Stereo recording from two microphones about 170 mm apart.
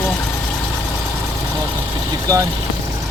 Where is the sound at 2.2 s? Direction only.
20° right (ahead or behind).